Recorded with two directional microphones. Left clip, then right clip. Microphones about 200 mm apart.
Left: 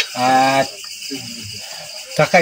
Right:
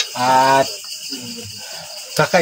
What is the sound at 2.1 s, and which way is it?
Speech, 20° right (ahead or behind).